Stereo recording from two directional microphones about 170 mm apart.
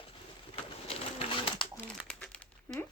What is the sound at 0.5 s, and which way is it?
Pigeon, 35° left (ahead or behind).